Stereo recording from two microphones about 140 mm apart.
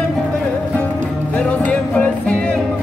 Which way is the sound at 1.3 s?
10° left (ahead or behind).